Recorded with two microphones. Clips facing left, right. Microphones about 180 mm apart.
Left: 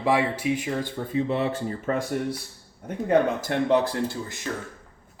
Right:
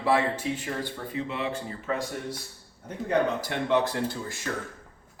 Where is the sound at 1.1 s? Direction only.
35° left (ahead or behind).